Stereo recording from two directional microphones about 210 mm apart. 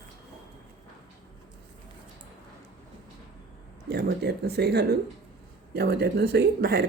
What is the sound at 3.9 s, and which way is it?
Speech, 50° right (ahead or behind).